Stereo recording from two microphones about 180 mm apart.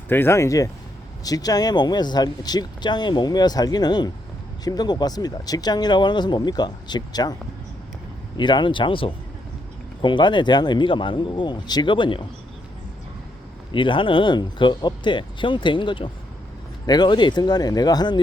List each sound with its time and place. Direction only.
0.1 s speech: 15° left (ahead or behind)
8.4 s speech: 25° left (ahead or behind)
13.7 s speech: 30° left (ahead or behind)